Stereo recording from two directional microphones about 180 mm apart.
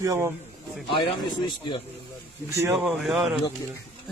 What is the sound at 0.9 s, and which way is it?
Speech, 30° left (ahead or behind).